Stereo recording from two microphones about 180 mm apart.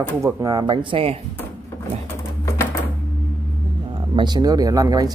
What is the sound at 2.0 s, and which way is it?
Pigeon, 15° left (ahead or behind).